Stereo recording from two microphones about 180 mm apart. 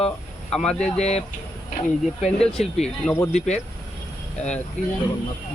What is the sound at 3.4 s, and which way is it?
Speech, 40° left (ahead or behind).